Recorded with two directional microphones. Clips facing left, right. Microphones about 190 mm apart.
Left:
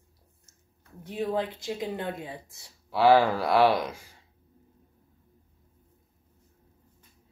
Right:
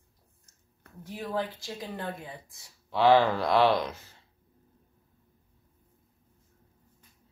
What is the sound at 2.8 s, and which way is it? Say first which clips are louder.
Speech: left 1 dB; 10° left (ahead or behind).